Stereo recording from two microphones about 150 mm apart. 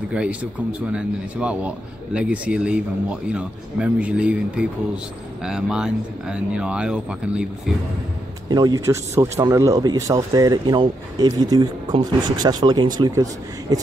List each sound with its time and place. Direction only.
0.1 s speech: 10° right (ahead or behind)
8.5 s speech: 25° right (ahead or behind)